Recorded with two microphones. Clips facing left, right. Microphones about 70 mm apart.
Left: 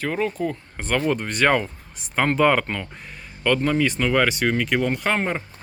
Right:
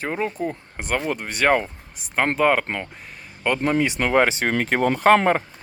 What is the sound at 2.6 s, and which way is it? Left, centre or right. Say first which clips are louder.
Speech: right 1 dB; right.